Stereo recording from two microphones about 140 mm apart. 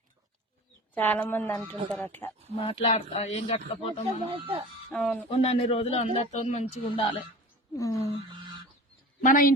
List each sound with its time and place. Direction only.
0.9 s speech: 10° left (ahead or behind)
2.0 s speech: 20° left (ahead or behind)
2.6 s a man's voice: 40° left (ahead or behind)
4.3 s speech: 40° right (ahead or behind)
4.9 s speech: 5° left (ahead or behind)
5.4 s a man's voice: 50° left (ahead or behind)
6.9 s speech: 40° left (ahead or behind)
7.8 s speech: 25° left (ahead or behind)
9.2 s a woman's voice: 75° left (ahead or behind)